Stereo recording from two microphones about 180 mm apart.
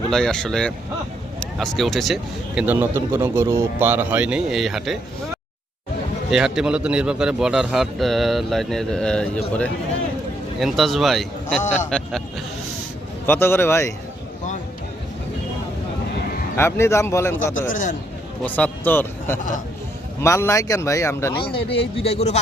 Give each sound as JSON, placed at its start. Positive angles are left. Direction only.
{"t": 0.1, "sound": "a man's voice", "side_deg": 5}
{"t": 2.6, "sound": "speech", "side_deg": -10}
{"t": 6.3, "sound": "a man's voice", "side_deg": -5}
{"t": 10.6, "sound": "a man's voice", "side_deg": 0}
{"t": 13.2, "sound": "speech", "side_deg": 10}
{"t": 16.6, "sound": "speech", "side_deg": 15}
{"t": 17.5, "sound": "a man's voice", "side_deg": 45}
{"t": 18.4, "sound": "speech", "side_deg": 10}
{"t": 21.3, "sound": "a man's voice", "side_deg": 30}